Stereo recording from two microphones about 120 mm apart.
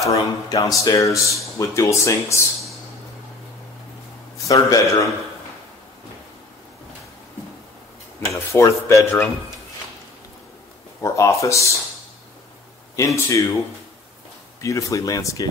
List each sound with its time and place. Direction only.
0.0 s speech: 25° left (ahead or behind)
4.5 s speech: 30° left (ahead or behind)
8.3 s speech: 25° left (ahead or behind)
11.0 s speech: 25° left (ahead or behind)
12.9 s speech: 25° left (ahead or behind)
14.6 s speech: 25° left (ahead or behind)